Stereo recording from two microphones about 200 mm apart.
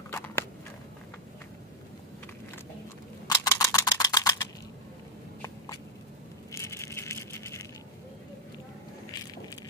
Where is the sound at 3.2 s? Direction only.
15° left (ahead or behind).